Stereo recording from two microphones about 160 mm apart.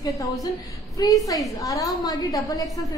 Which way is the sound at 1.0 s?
25° left (ahead or behind).